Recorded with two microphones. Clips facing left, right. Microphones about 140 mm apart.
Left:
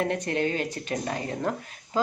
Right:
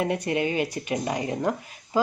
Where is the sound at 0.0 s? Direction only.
10° right (ahead or behind).